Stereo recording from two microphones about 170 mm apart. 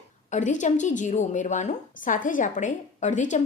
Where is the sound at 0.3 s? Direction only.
45° left (ahead or behind).